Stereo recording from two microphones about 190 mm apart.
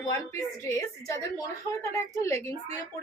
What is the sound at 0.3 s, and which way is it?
A woman's voice, 15° left (ahead or behind).